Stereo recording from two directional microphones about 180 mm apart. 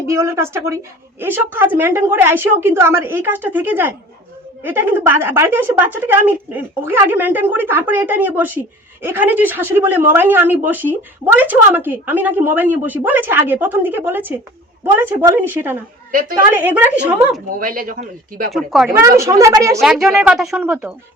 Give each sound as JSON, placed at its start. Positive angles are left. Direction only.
{"t": 0.0, "sound": "a woman's voice", "side_deg": -15}
{"t": 17.6, "sound": "speech", "side_deg": -50}
{"t": 18.5, "sound": "speech", "side_deg": 0}
{"t": 19.2, "sound": "a woman's voice", "side_deg": -15}
{"t": 19.8, "sound": "speech", "side_deg": 0}